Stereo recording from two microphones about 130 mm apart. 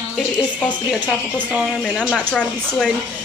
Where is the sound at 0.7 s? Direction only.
10° right (ahead or behind).